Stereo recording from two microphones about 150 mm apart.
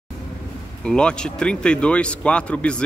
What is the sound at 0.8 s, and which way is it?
Speech, 5° left (ahead or behind).